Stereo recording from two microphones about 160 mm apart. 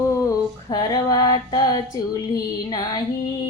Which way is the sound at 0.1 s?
20° left (ahead or behind).